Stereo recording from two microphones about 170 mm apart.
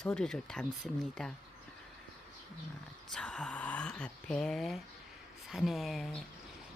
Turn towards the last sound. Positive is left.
turn(degrees=0)  # may be behind; listen again after turning